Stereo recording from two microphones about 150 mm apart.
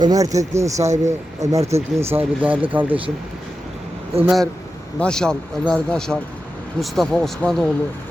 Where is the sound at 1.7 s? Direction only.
45° right (ahead or behind).